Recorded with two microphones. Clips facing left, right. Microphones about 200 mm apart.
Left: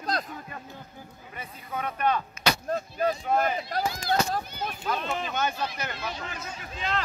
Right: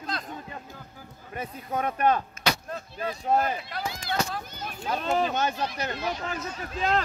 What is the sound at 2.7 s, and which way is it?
Speech, 40° left (ahead or behind).